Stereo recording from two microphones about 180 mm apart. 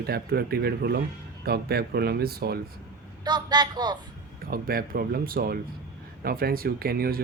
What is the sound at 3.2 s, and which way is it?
Speech, 25° right (ahead or behind).